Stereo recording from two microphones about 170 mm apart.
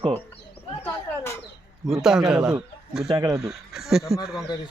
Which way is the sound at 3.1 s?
20° right (ahead or behind).